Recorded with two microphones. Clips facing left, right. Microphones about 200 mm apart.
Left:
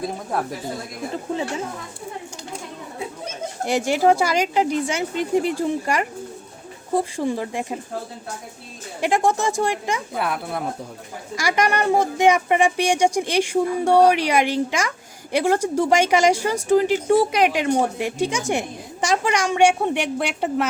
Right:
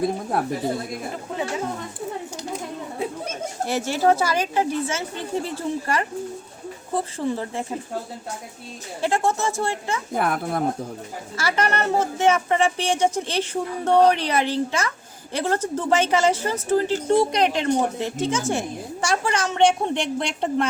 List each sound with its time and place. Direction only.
3.7 s speech: 15° left (ahead or behind)
9.0 s speech: 15° left (ahead or behind)
10.2 s speech: 50° right (ahead or behind)
11.3 s speech: 15° left (ahead or behind)